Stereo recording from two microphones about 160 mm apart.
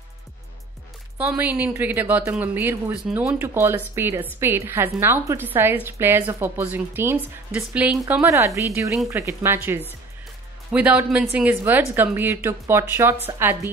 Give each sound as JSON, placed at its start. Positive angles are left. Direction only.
{"t": 1.1, "sound": "a woman's voice", "side_deg": -10}